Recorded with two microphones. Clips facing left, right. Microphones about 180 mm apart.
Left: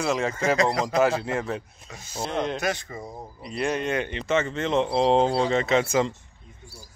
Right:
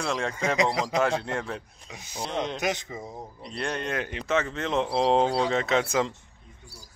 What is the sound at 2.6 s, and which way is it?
Speech, 20° right (ahead or behind).